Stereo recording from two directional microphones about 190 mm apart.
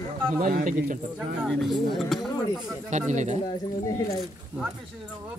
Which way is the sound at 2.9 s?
40° right (ahead or behind).